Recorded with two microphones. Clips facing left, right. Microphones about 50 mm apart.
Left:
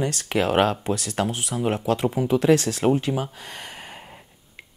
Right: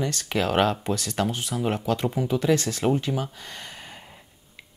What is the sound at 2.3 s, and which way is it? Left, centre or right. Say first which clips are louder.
Speech: left 5 dB; left.